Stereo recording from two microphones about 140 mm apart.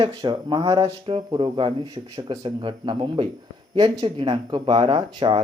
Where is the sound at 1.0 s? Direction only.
40° right (ahead or behind).